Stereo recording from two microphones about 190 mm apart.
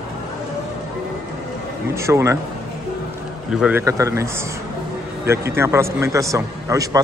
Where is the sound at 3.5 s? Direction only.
5° right (ahead or behind).